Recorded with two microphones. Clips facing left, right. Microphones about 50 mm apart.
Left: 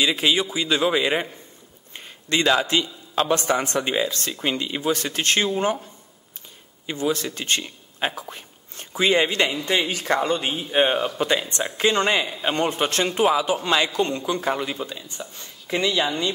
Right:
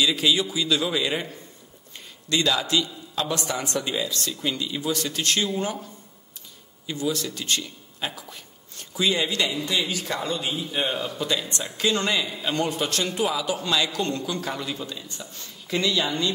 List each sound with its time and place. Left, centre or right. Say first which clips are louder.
0.0 s a man's voice: left 1 dB; left
6.9 s a man's voice: left 3 dB; left